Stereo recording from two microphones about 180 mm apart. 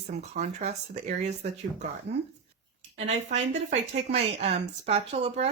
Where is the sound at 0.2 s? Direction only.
40° right (ahead or behind).